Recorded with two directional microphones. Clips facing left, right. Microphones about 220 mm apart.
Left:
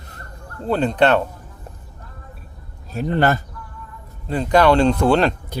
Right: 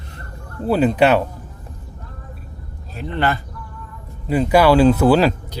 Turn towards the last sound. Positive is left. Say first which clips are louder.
# right 3 dB
turn(degrees=-5)  # may be behind; listen again after turning